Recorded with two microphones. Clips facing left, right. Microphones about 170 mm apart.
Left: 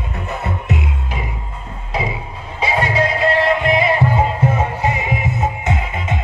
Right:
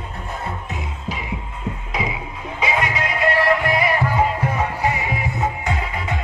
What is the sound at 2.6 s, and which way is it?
Music, 30° left (ahead or behind).